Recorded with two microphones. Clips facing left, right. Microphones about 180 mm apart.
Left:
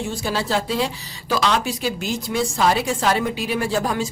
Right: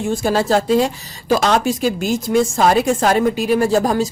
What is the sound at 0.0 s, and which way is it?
A woman's voice, 50° right (ahead or behind).